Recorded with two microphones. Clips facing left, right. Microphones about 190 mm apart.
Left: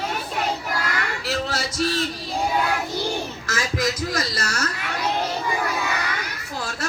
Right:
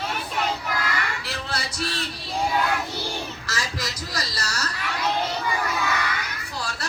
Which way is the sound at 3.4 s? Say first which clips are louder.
Left 7 dB; 50° left (ahead or behind).